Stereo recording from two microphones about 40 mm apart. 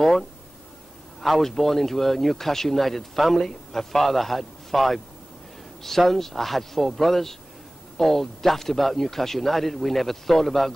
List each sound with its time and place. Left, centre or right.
0.0 s speech: centre